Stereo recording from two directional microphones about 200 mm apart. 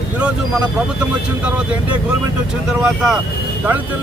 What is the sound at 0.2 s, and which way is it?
Speech, 5° right (ahead or behind).